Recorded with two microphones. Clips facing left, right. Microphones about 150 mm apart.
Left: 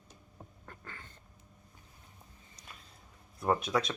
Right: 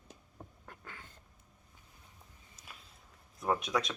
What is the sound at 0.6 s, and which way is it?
Duck, 10° right (ahead or behind).